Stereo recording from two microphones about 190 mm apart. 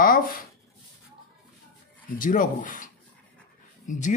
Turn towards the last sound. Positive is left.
turn(degrees=40)  # may be behind; listen again after turning